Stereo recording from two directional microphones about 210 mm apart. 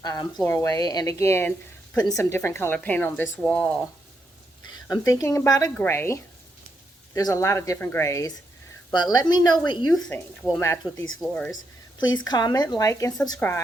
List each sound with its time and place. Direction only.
0.0 s a woman's voice: 20° left (ahead or behind)
4.6 s a woman's voice: 20° left (ahead or behind)
9.9 s speech: centre (ahead or behind)
10.9 s speech: 70° left (ahead or behind)
11.2 s speech: 5° left (ahead or behind)
12.1 s a woman's voice: 20° left (ahead or behind)